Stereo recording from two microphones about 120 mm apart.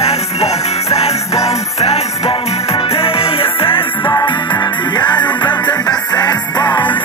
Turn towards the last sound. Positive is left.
turn(degrees=35)  # may be behind; listen again after turning